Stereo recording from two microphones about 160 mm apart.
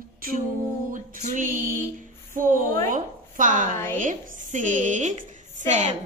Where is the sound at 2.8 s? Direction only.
55° right (ahead or behind).